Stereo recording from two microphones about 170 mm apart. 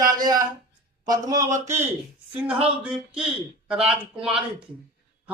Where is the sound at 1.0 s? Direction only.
20° right (ahead or behind).